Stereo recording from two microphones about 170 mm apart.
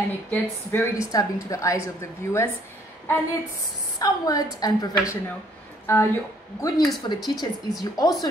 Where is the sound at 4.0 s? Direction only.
20° left (ahead or behind).